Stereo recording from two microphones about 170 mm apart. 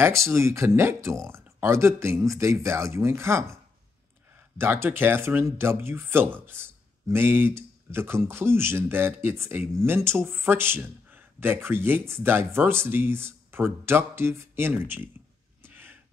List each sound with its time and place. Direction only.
0.0 s speech: 15° right (ahead or behind)
4.6 s speech: 15° right (ahead or behind)
15.6 s a sound: 10° right (ahead or behind)